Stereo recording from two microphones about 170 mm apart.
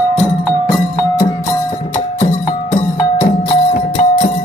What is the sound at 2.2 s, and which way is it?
Music, 30° left (ahead or behind).